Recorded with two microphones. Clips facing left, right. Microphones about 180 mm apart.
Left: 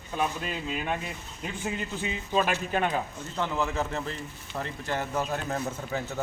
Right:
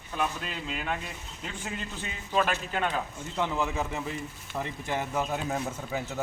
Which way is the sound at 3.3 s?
10° right (ahead or behind).